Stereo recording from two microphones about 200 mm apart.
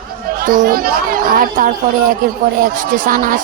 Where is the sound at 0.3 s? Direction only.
45° right (ahead or behind).